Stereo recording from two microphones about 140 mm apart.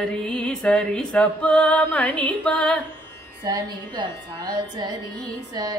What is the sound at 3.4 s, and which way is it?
A woman's voice, 30° right (ahead or behind).